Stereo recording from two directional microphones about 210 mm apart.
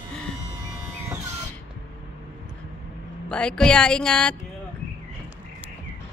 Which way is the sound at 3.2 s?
5° left (ahead or behind).